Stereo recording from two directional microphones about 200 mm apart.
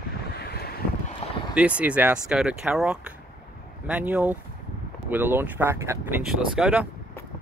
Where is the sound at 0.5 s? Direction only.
50° left (ahead or behind).